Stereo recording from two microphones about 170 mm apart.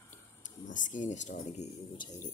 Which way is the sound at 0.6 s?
90° left.